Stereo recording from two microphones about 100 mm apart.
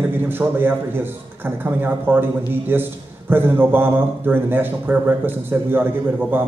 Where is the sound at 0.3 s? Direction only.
20° right (ahead or behind).